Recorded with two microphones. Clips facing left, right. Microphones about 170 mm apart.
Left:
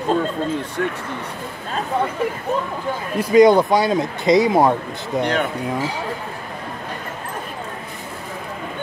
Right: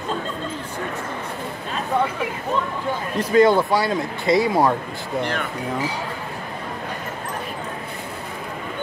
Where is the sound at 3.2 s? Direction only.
15° left (ahead or behind).